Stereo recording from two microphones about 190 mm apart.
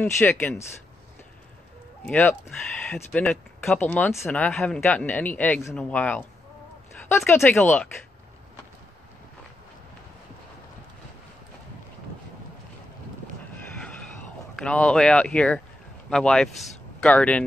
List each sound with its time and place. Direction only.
0.0 s speech: 10° left (ahead or behind)
2.0 s speech: 10° left (ahead or behind)
14.5 s speech: 5° left (ahead or behind)